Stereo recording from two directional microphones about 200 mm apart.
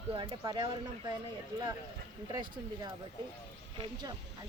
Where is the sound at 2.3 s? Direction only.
20° right (ahead or behind).